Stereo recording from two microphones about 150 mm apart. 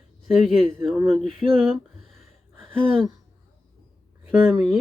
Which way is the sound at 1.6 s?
Centre (ahead or behind).